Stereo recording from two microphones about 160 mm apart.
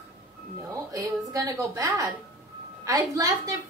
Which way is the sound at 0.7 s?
20° right (ahead or behind).